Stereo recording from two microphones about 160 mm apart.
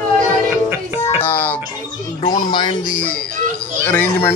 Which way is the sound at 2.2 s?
30° left (ahead or behind).